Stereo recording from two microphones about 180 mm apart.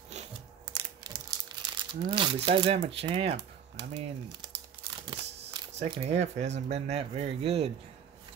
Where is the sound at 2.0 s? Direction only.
25° right (ahead or behind).